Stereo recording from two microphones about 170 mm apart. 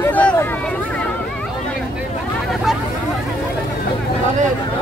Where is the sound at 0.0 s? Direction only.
10° left (ahead or behind).